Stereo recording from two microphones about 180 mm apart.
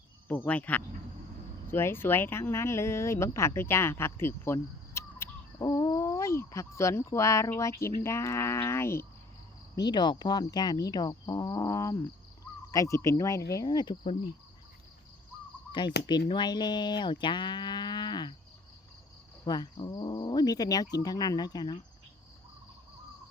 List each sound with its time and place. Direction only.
0.3 s speech: 10° left (ahead or behind)
15.9 s speech: 70° left (ahead or behind)
16.3 s moo: 25° left (ahead or behind)
19.5 s speech: 25° left (ahead or behind)